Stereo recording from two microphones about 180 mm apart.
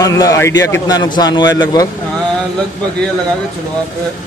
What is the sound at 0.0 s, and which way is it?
A man's voice, 20° left (ahead or behind).